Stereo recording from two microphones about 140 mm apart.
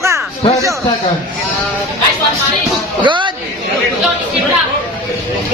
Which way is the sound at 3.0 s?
35° right (ahead or behind).